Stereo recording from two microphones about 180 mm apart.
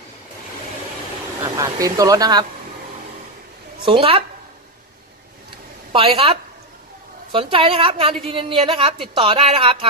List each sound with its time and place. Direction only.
1.4 s a woman's voice: 20° right (ahead or behind)
5.9 s a woman's voice: 30° right (ahead or behind)
7.3 s a woman's voice: 30° right (ahead or behind)